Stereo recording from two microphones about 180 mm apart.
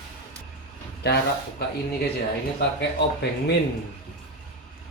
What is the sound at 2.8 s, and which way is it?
Speech, 70° left (ahead or behind).